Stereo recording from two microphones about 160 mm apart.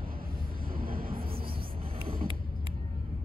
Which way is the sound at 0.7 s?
65° right (ahead or behind).